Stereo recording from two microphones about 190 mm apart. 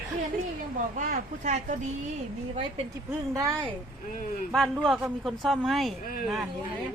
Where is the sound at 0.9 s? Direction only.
40° right (ahead or behind).